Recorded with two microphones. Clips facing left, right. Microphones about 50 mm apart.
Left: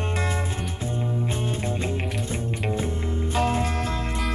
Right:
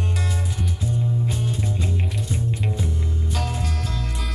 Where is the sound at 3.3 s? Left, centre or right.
Left.